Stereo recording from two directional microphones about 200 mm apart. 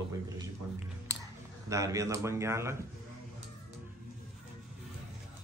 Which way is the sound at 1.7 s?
15° right (ahead or behind).